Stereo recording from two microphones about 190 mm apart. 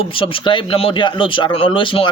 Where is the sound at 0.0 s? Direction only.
30° left (ahead or behind).